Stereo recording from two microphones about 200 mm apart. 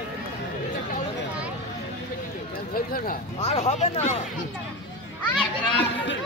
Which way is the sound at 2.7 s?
45° left (ahead or behind).